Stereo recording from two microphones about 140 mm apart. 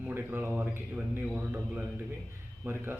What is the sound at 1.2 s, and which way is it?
Speech, 5° right (ahead or behind).